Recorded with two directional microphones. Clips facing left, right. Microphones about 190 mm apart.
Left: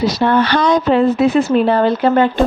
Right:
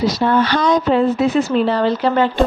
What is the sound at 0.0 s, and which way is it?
Speech, 70° left (ahead or behind).